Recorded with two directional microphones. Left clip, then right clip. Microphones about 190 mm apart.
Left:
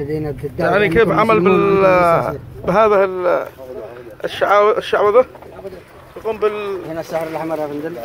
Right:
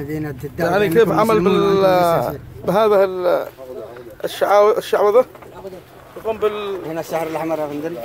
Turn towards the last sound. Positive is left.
turn(degrees=-20)  # may be behind; listen again after turning